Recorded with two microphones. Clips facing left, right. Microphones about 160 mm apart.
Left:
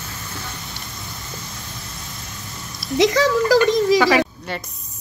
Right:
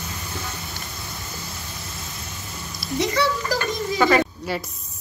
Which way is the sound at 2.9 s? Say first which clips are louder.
Left 6 dB; 90° left.